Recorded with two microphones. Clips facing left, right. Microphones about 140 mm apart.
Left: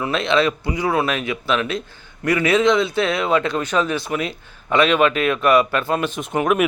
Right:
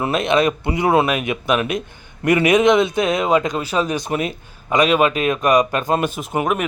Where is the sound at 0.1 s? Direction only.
20° right (ahead or behind).